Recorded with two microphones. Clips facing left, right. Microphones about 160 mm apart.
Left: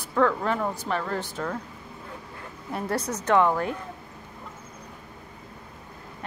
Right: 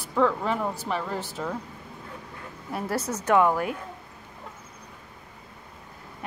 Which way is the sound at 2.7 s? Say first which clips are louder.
Even; 5° right (ahead or behind).